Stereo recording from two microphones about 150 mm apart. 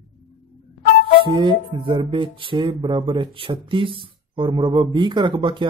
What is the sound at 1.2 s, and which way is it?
Speech, 30° right (ahead or behind).